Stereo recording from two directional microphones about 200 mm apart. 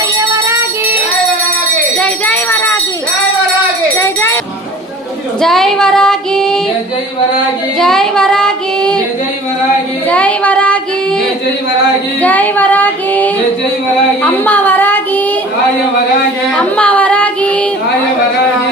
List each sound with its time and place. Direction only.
0.2 s music: 15° right (ahead or behind)
2.0 s jingle bell: 5° left (ahead or behind)
3.9 s music: 10° left (ahead or behind)
5.4 s child singing: centre (ahead or behind)
7.8 s child singing: centre (ahead or behind)
10.1 s female singing: 5° left (ahead or behind)
12.2 s female singing: 10° left (ahead or behind)
14.2 s a sound: 10° left (ahead or behind)
16.6 s music: 5° left (ahead or behind)